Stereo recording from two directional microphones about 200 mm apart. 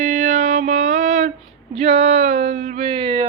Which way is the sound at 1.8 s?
30° right (ahead or behind).